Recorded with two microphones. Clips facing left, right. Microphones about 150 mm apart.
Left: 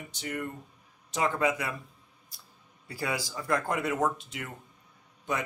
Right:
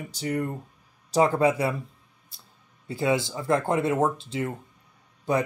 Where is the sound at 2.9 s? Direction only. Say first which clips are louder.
Right 9 dB; 25° right (ahead or behind).